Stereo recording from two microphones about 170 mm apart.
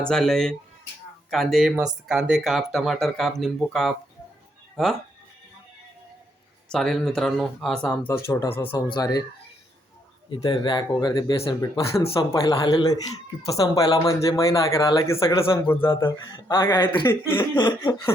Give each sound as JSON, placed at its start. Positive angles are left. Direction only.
{"t": 0.0, "sound": "speech", "side_deg": 5}
{"t": 6.7, "sound": "speech", "side_deg": 0}
{"t": 10.2, "sound": "speech", "side_deg": 30}
{"t": 17.1, "sound": "speech", "side_deg": 15}
{"t": 17.6, "sound": "speech", "side_deg": 25}